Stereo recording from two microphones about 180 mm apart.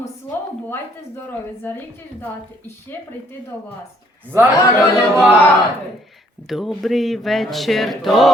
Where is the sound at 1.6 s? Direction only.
10° left (ahead or behind).